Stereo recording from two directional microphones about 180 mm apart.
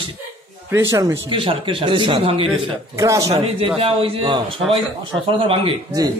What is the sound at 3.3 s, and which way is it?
A man's voice, 30° right (ahead or behind).